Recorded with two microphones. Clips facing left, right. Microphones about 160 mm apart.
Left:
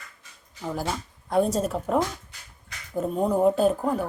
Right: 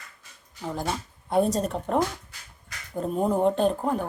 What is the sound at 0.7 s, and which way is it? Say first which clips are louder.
A woman's voice: even; centre (ahead or behind).